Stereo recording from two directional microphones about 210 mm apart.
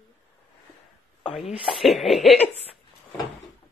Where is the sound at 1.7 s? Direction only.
Centre (ahead or behind).